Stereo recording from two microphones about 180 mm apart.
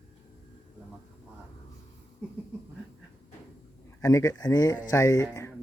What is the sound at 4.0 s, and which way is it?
Speech, 15° left (ahead or behind).